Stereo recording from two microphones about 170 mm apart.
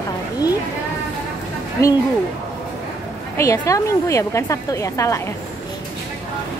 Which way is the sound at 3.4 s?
20° left (ahead or behind).